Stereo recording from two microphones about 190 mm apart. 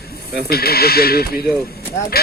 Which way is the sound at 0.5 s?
55° left (ahead or behind).